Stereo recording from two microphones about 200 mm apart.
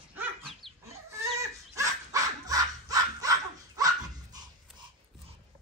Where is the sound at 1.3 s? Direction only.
15° right (ahead or behind).